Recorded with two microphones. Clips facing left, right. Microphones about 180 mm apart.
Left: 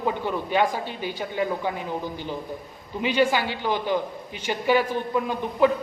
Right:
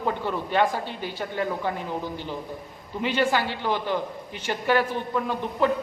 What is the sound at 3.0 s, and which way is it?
A man's voice, 10° left (ahead or behind).